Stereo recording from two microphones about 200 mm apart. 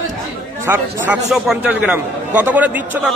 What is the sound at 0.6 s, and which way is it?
Speech, 10° right (ahead or behind).